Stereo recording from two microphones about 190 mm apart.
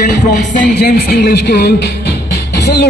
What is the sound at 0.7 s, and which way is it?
Speech, 55° left (ahead or behind).